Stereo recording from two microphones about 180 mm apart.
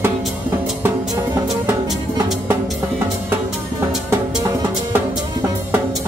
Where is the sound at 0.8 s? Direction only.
15° right (ahead or behind).